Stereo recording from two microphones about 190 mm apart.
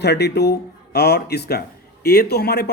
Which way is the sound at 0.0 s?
60° left (ahead or behind).